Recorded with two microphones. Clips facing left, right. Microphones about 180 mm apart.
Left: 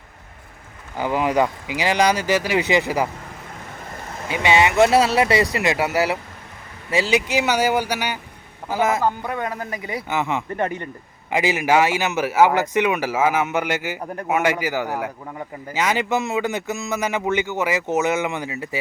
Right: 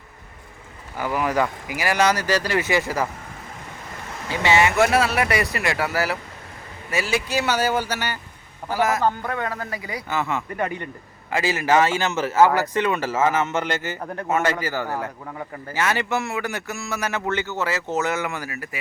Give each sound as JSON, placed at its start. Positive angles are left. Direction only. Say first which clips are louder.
{"t": 0.9, "sound": "a man's voice", "louder": "left 3 dB", "side_deg": 20}
{"t": 4.3, "sound": "a man's voice", "louder": "left 1 dB", "side_deg": 20}
{"t": 8.7, "sound": "a man's voice", "louder": "left 1 dB", "side_deg": 25}